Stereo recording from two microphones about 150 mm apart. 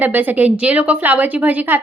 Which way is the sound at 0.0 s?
10° right (ahead or behind).